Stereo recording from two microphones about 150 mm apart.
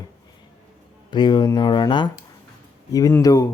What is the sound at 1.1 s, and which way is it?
Speech, 30° left (ahead or behind).